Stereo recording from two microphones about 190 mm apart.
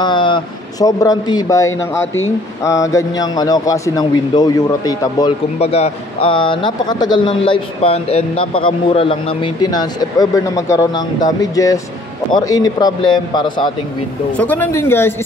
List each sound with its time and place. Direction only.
0.0 s speech: 25° left (ahead or behind)
5.6 s speech: 30° left (ahead or behind)
14.3 s speech: 10° left (ahead or behind)